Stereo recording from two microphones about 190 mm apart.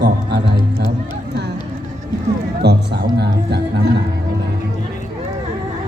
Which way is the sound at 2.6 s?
60° right (ahead or behind).